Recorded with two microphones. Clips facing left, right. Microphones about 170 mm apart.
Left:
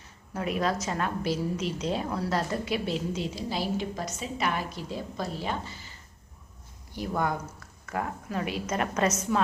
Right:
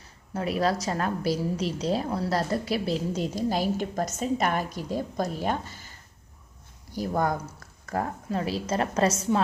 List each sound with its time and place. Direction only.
0.3 s a woman's voice: 35° right (ahead or behind)
6.9 s a woman's voice: 40° right (ahead or behind)